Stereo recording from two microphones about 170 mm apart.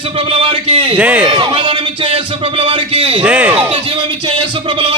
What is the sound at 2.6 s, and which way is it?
Speech, 35° right (ahead or behind).